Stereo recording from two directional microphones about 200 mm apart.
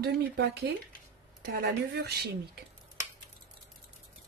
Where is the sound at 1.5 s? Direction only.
50° right (ahead or behind).